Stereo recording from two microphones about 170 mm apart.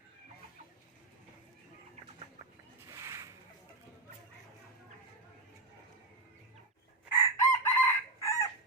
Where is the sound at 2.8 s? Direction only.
15° right (ahead or behind).